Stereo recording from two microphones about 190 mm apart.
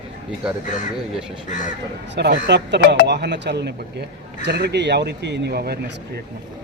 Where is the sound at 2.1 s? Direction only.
65° right (ahead or behind).